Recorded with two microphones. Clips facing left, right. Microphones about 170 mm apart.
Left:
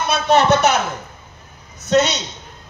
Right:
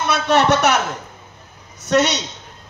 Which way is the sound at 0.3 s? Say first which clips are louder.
Left 1 dB; 85° right.